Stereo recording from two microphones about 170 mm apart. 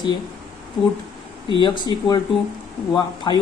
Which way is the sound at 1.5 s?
25° left (ahead or behind).